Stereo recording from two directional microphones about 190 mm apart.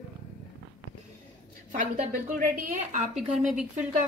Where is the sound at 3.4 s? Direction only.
5° right (ahead or behind).